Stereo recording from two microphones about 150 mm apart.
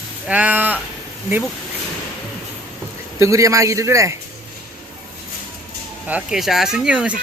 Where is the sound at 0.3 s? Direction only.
10° right (ahead or behind).